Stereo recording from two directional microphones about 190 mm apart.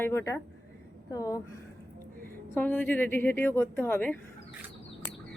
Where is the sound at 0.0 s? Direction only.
15° left (ahead or behind).